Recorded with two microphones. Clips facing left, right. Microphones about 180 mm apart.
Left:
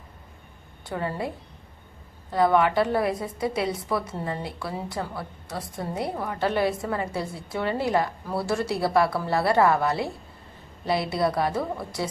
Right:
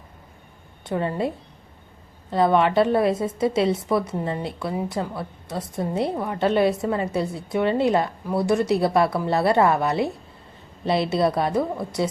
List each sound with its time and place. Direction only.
0.9 s a woman's voice: 25° right (ahead or behind)
2.3 s a woman's voice: 25° right (ahead or behind)